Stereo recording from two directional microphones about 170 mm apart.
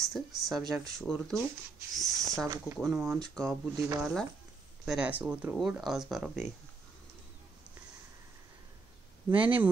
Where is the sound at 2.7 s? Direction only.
Centre (ahead or behind).